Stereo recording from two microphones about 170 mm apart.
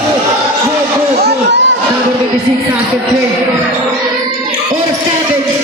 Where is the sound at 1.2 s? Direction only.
90° right.